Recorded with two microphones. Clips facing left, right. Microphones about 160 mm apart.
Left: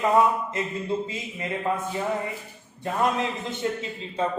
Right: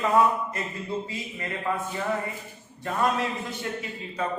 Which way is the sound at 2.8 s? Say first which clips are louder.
Left 1 dB; 20° left (ahead or behind).